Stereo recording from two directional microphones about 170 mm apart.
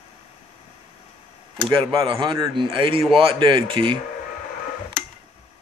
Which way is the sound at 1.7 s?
30° right (ahead or behind).